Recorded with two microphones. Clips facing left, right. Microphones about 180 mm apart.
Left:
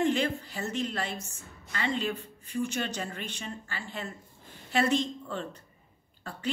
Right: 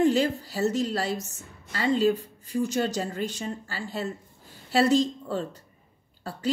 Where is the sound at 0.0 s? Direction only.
35° right (ahead or behind).